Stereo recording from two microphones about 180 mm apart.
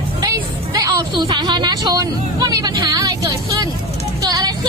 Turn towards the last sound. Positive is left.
turn(degrees=-20)  # may be behind; listen again after turning